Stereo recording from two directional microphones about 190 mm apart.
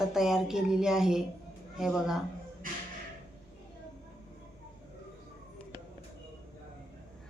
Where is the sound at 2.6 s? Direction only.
45° right (ahead or behind).